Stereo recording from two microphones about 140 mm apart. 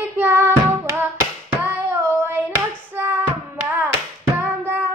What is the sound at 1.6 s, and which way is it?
Hands, 15° right (ahead or behind).